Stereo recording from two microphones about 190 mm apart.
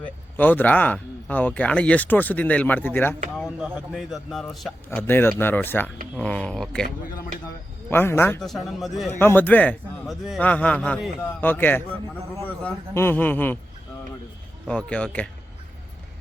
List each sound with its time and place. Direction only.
0.0 s speech: 10° left (ahead or behind)
3.3 s speech: 5° right (ahead or behind)
4.9 s speech: 10° left (ahead or behind)
7.9 s speech: 10° left (ahead or behind)
8.4 s speech: centre (ahead or behind)
9.0 s speech: 10° left (ahead or behind)
14.7 s speech: 5° left (ahead or behind)